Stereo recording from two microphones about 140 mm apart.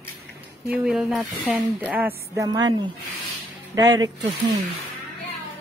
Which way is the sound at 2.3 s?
30° right (ahead or behind).